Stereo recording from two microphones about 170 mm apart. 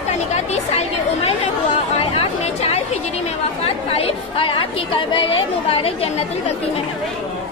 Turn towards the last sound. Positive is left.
turn(degrees=35)  # may be behind; listen again after turning